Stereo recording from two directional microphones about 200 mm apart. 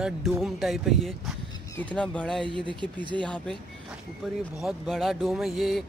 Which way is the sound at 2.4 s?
25° right (ahead or behind).